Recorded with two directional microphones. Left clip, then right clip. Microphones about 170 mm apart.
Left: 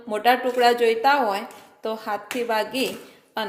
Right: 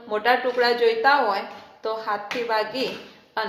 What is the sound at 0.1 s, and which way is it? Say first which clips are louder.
A woman's voice: left 1 dB; 55° left (ahead or behind).